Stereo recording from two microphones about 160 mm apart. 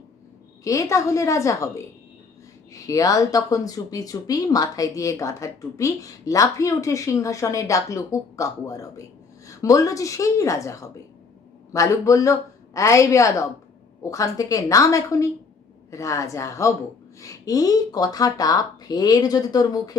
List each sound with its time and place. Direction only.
0.6 s speech: 20° left (ahead or behind)
2.7 s speech: 20° left (ahead or behind)